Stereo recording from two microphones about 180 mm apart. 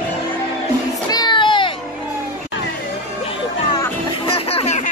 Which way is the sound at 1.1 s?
25° left (ahead or behind).